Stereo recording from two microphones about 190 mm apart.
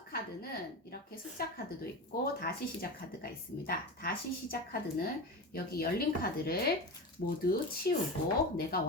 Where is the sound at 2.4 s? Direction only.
55° left (ahead or behind).